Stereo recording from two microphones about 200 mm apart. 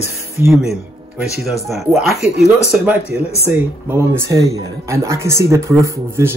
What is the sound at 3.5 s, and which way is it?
A man's voice, 10° right (ahead or behind).